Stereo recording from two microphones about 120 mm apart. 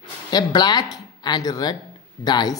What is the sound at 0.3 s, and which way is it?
A woman's voice, 35° left (ahead or behind).